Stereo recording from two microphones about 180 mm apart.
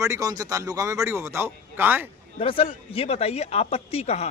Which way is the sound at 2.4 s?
30° left (ahead or behind).